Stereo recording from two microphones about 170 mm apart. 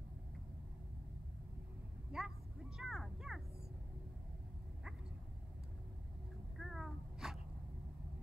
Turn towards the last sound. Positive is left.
turn(degrees=-5)  # may be behind; listen again after turning